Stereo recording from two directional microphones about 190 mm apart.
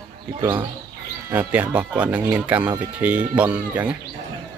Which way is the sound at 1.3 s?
10° right (ahead or behind).